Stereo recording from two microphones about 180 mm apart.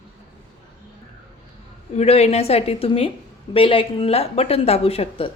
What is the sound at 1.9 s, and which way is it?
A woman's voice, 35° left (ahead or behind).